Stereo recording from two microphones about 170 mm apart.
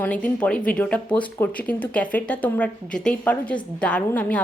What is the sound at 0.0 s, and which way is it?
Speech, 10° left (ahead or behind).